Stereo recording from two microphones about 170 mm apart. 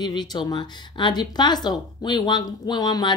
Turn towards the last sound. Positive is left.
turn(degrees=25)  # may be behind; listen again after turning